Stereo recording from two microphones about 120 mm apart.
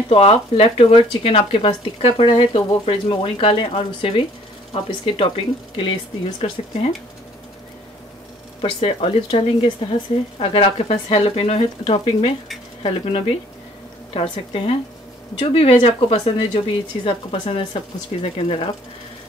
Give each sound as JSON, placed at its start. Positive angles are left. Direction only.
{"t": 0.1, "sound": "speech", "side_deg": 50}
{"t": 8.5, "sound": "speech", "side_deg": 50}